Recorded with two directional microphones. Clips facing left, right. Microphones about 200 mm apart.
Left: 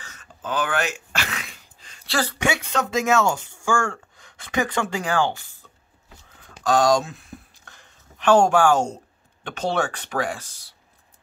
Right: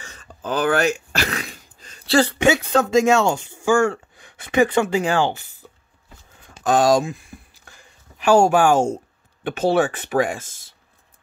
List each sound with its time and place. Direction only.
0.0 s speech: 35° right (ahead or behind)
6.5 s a sound: 20° right (ahead or behind)
9.4 s speech: 15° right (ahead or behind)